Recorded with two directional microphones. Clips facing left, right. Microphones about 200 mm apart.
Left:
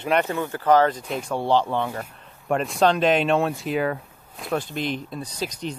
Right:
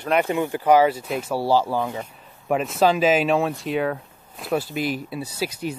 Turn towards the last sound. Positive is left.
turn(degrees=-5)  # may be behind; listen again after turning